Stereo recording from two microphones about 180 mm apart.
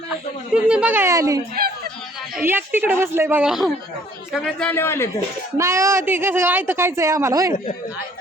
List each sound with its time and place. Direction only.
0.5 s a woman's voice: 5° right (ahead or behind)
1.6 s a sound: 60° right (ahead or behind)
2.3 s a woman's voice: 10° right (ahead or behind); by 5.0 s 15° left (ahead or behind)
5.5 s a woman's voice: 15° right (ahead or behind)